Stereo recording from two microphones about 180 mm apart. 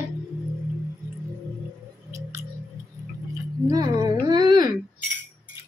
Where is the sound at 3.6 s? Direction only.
20° right (ahead or behind).